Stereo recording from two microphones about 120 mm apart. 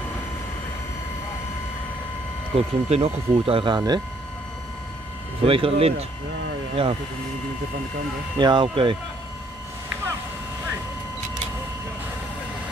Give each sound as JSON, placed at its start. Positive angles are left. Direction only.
{"t": 2.5, "sound": "speech", "side_deg": -55}
{"t": 5.4, "sound": "speech", "side_deg": -50}
{"t": 8.4, "sound": "speech", "side_deg": -40}